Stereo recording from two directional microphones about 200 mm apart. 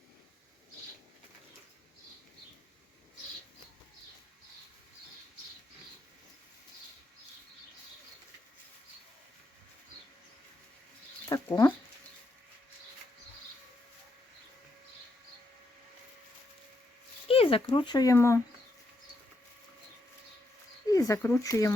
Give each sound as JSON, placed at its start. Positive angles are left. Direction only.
{"t": 11.3, "sound": "speech", "side_deg": 15}
{"t": 17.2, "sound": "speech", "side_deg": 30}
{"t": 20.9, "sound": "speech", "side_deg": 15}